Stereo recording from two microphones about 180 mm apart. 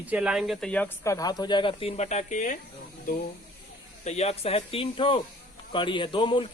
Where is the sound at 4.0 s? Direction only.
35° left (ahead or behind).